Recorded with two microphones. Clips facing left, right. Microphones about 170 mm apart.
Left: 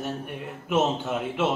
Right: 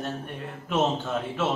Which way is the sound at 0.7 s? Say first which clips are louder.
Left 1 dB; 10° left (ahead or behind).